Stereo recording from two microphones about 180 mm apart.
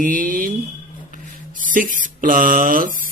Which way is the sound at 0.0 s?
50° right (ahead or behind).